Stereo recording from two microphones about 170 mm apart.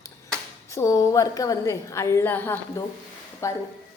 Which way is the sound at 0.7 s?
20° left (ahead or behind).